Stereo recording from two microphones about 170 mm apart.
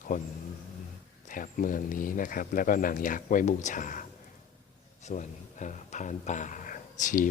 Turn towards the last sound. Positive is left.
turn(degrees=50)  # may be behind; listen again after turning